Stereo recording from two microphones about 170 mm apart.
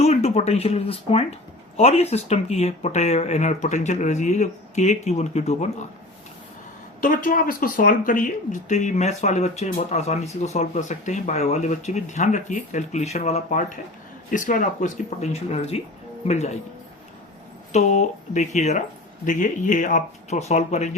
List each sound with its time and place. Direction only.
0.0 s speech: 40° left (ahead or behind)
7.0 s speech: 50° left (ahead or behind)
17.7 s speech: 45° left (ahead or behind)